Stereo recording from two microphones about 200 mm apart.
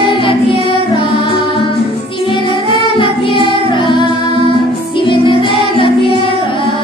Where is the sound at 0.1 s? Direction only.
25° left (ahead or behind).